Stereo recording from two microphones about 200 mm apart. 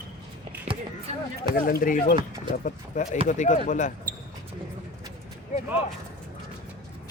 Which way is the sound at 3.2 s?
35° left (ahead or behind).